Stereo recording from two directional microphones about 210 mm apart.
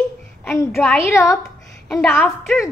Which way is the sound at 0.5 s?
5° left (ahead or behind).